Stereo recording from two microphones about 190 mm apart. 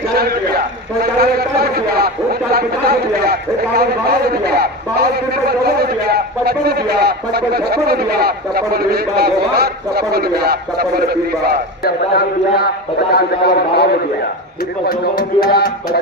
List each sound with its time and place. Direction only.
0.1 s a sound: 55° right (ahead or behind)
1.2 s a man's voice: 55° right (ahead or behind)
11.8 s a man's voice: 55° left (ahead or behind)
14.9 s speech: 50° left (ahead or behind)